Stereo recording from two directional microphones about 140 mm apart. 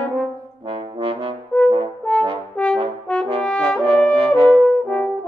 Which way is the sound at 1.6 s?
40° right (ahead or behind).